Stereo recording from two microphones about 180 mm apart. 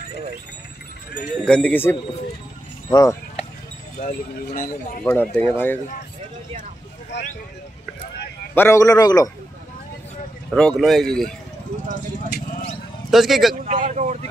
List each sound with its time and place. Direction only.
1.4 s a man's voice: 5° left (ahead or behind)
4.0 s speech: 50° left (ahead or behind)
5.0 s speech: 10° left (ahead or behind)
8.5 s a man's voice: 15° left (ahead or behind)
10.5 s speech: centre (ahead or behind)
11.9 s speech: 60° left (ahead or behind)
13.1 s speech: centre (ahead or behind)
13.7 s speech: 40° right (ahead or behind)